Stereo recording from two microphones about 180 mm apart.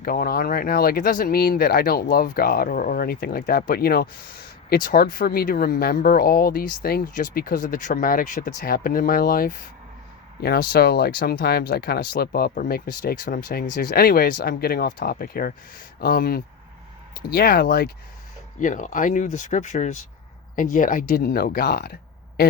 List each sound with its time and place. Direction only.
0.0 s speech: 55° left (ahead or behind)
18.6 s speech: 45° left (ahead or behind); by 21.9 s 60° left (ahead or behind)